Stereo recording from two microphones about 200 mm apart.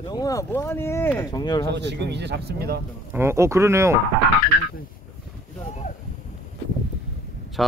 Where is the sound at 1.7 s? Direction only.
60° right (ahead or behind).